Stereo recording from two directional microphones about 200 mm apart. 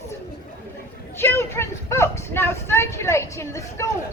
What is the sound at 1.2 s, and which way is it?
Speech, 10° left (ahead or behind).